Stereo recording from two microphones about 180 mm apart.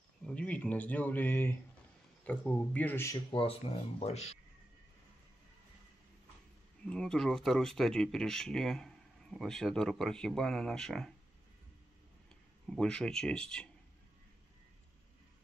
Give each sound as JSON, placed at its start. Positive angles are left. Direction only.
{"t": 0.2, "sound": "speech", "side_deg": 5}
{"t": 3.3, "sound": "speech", "side_deg": 35}
{"t": 6.8, "sound": "speech", "side_deg": 5}
{"t": 12.6, "sound": "speech", "side_deg": 5}